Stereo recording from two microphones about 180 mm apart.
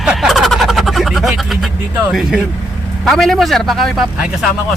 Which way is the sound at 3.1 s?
Centre (ahead or behind).